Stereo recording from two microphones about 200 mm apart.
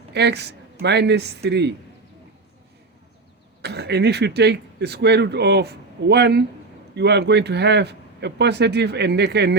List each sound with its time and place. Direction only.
0.1 s speech: 55° right (ahead or behind)
3.6 s speech: 55° right (ahead or behind)